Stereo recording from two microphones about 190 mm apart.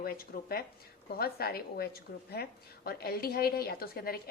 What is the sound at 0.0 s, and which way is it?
A woman's voice, 50° left (ahead or behind).